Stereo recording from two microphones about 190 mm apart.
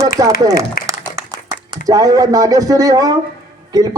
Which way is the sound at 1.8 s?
20° right (ahead or behind).